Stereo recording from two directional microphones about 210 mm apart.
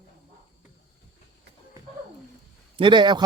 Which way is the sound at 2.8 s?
20° right (ahead or behind).